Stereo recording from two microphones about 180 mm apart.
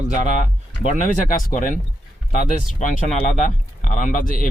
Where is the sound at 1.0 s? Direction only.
50° left (ahead or behind).